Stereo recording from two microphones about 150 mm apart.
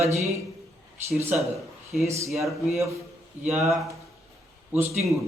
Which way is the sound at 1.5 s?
Centre (ahead or behind).